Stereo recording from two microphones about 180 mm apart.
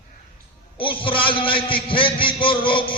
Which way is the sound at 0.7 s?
30° left (ahead or behind).